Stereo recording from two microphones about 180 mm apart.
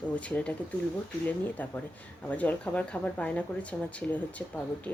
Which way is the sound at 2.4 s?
10° left (ahead or behind).